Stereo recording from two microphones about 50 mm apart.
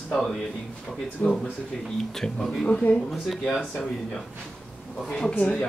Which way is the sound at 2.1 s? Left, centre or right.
Centre.